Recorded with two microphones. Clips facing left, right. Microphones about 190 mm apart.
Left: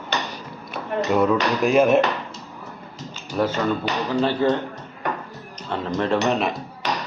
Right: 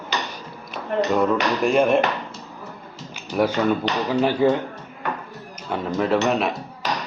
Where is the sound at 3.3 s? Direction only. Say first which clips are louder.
Right 2 dB; 10° right (ahead or behind).